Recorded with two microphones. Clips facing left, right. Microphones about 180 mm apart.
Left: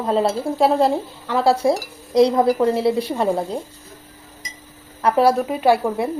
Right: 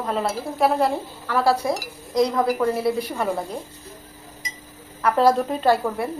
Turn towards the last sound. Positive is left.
turn(degrees=15)  # may be behind; listen again after turning